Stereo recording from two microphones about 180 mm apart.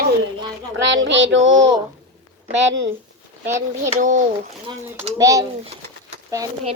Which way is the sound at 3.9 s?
45° right (ahead or behind).